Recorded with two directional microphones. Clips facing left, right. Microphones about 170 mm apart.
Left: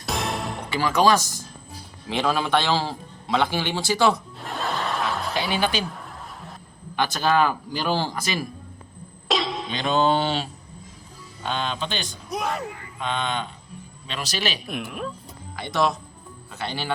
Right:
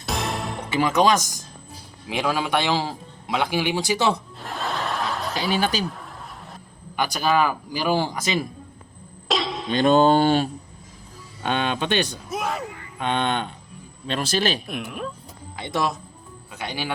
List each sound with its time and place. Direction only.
0.0 s music: centre (ahead or behind)
0.7 s a man's voice: 25° right (ahead or behind)
4.4 s snicker: centre (ahead or behind)
5.3 s speech: 40° right (ahead or behind)
6.9 s a man's voice: 10° right (ahead or behind)
9.2 s a sound: centre (ahead or behind)
9.7 s speech: 45° right (ahead or behind)
11.4 s speech: 65° right (ahead or behind)
12.3 s a sound: centre (ahead or behind)
13.0 s cattle: 55° right (ahead or behind)
14.1 s speech: 50° right (ahead or behind)
14.7 s speech: centre (ahead or behind)
16.6 s a man's voice: 10° right (ahead or behind)